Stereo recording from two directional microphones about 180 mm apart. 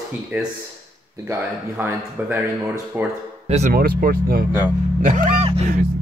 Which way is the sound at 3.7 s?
55° right (ahead or behind).